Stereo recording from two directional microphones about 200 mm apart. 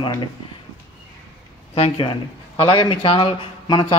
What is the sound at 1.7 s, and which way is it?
A man's voice, 25° left (ahead or behind).